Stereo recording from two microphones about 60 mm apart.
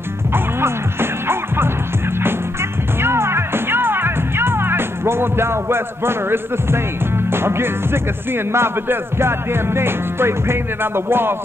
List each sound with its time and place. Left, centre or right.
0.3 s music: right
3.0 s music: right
7.2 s speech: right